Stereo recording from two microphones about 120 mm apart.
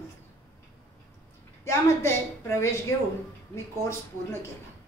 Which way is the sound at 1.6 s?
25° left (ahead or behind).